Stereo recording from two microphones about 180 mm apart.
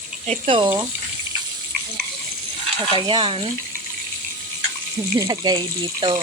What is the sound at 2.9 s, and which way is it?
Speech, 25° right (ahead or behind).